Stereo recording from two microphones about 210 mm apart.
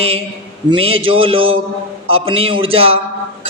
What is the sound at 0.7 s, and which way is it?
A man's voice, 25° right (ahead or behind).